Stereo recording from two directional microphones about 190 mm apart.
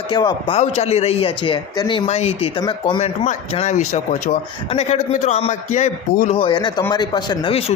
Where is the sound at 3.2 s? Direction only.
40° left (ahead or behind).